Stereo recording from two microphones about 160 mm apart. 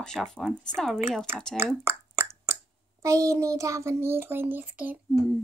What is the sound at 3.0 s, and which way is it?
A child's voice, 20° right (ahead or behind).